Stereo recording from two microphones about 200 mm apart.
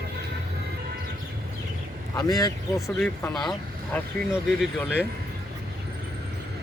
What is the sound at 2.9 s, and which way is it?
Speech, 5° left (ahead or behind).